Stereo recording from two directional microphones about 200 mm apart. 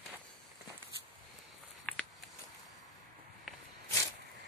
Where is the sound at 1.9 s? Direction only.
5° left (ahead or behind).